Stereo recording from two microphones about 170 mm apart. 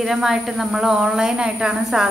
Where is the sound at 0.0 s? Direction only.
Centre (ahead or behind).